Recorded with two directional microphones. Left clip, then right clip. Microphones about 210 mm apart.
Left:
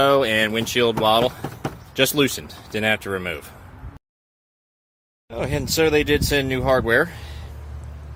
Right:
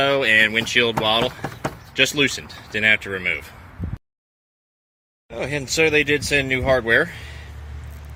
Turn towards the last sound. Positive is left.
turn(degrees=10)  # may be behind; listen again after turning